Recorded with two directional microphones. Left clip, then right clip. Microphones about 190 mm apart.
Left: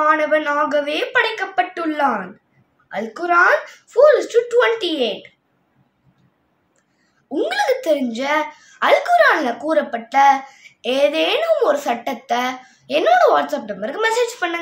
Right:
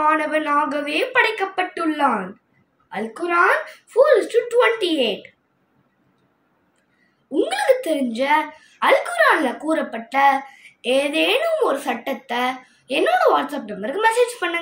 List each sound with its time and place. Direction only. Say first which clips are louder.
0.0 s a woman's voice: left 3 dB; 10° left (ahead or behind)
7.3 s a woman's voice: even; 15° left (ahead or behind)